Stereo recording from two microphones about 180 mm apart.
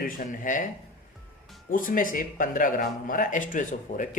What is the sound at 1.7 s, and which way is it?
Speech, 50° left (ahead or behind).